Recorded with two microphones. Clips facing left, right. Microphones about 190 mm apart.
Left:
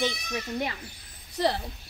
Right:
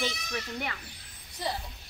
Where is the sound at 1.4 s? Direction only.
80° left.